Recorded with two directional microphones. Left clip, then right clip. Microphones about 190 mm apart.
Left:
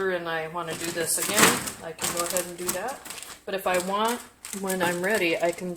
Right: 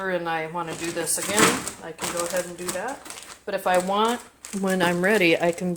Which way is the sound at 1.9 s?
40° right (ahead or behind).